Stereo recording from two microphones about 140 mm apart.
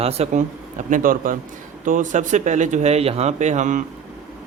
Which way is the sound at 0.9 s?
75° right (ahead or behind).